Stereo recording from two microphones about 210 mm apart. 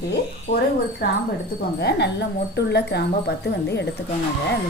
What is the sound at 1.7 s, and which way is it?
Speech, 55° left (ahead or behind).